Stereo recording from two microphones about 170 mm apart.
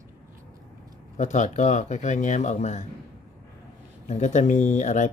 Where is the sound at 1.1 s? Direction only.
45° left (ahead or behind).